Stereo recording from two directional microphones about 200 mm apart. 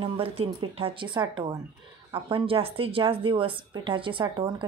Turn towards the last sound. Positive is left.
turn(degrees=-25)  # may be behind; listen again after turning